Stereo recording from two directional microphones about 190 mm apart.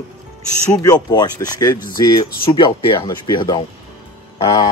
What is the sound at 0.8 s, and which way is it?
Speech, 20° left (ahead or behind).